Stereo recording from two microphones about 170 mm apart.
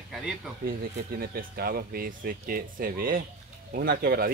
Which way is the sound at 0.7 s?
65° right (ahead or behind).